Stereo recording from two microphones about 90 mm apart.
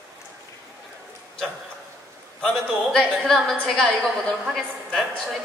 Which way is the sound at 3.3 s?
Centre (ahead or behind).